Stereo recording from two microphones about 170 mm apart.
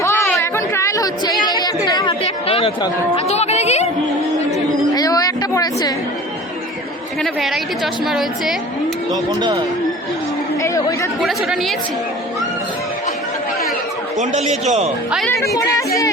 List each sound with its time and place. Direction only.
0.3 s chatter: 15° left (ahead or behind)
2.2 s speech: 35° left (ahead or behind)
4.9 s speech: 20° left (ahead or behind)
7.2 s a woman's voice: centre (ahead or behind)
9.4 s speech: 25° right (ahead or behind)
10.6 s chatter: 20° left (ahead or behind)
11.2 s a woman's voice: centre (ahead or behind)
14.2 s a man's voice: 40° right (ahead or behind)